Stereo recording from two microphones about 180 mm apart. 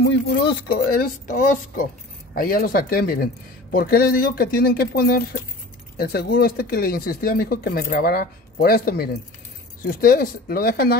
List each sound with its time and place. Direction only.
0.0 s speech: 70° left (ahead or behind)